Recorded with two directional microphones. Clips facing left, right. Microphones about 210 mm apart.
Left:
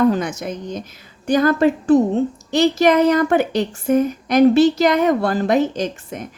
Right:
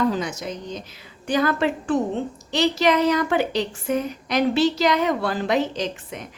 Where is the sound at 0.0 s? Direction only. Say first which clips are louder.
Left 6 dB; 55° left (ahead or behind).